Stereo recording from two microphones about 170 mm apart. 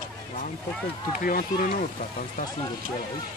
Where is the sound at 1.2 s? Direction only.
55° left (ahead or behind).